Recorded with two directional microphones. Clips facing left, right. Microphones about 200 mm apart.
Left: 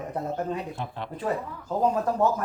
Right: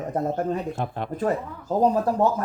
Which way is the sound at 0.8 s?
50° right (ahead or behind).